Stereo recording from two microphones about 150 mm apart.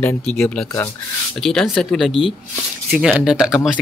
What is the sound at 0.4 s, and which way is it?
Speech, 5° left (ahead or behind).